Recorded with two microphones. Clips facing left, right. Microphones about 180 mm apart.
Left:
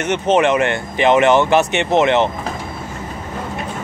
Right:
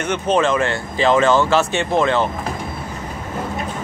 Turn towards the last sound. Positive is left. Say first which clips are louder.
# left 3 dB
turn(degrees=20)  # may be behind; listen again after turning